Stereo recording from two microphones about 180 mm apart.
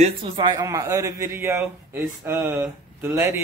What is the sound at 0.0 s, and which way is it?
A man's voice, 25° right (ahead or behind).